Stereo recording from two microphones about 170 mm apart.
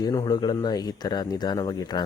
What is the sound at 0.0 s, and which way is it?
Speech, 20° left (ahead or behind).